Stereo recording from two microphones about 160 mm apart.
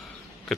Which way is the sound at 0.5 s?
Centre (ahead or behind).